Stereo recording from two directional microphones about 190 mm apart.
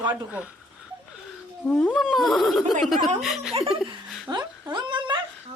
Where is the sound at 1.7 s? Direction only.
10° left (ahead or behind).